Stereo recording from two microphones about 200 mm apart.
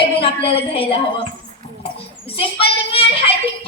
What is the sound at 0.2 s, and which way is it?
Speech, 30° left (ahead or behind).